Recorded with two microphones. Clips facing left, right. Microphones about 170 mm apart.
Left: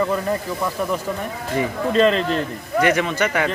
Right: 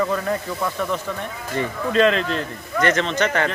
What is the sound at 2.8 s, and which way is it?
Speech, 10° left (ahead or behind).